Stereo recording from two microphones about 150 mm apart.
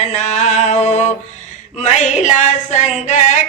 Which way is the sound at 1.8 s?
50° left (ahead or behind).